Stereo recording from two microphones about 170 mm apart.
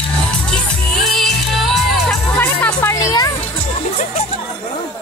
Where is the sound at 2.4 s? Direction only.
10° left (ahead or behind).